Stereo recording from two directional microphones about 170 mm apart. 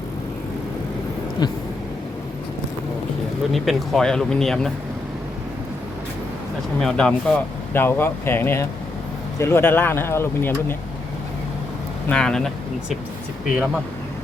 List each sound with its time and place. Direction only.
1.4 s speech: 25° left (ahead or behind)
3.5 s speech: centre (ahead or behind)
6.7 s speech: 5° left (ahead or behind)
12.0 s speech: 5° left (ahead or behind)